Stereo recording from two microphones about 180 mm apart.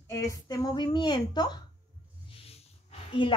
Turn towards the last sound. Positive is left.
turn(degrees=30)  # may be behind; listen again after turning